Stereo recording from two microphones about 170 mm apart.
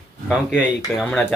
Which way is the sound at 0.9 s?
5° left (ahead or behind).